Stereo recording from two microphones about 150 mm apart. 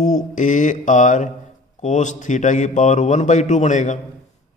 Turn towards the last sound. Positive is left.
turn(degrees=55)  # may be behind; listen again after turning